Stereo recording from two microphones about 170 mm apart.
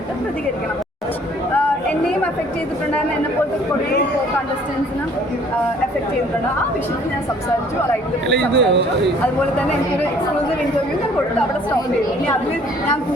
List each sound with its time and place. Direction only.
8.3 s speech: 90° right